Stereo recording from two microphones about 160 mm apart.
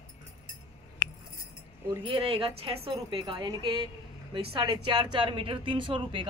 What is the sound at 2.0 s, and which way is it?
A woman's voice, 35° right (ahead or behind).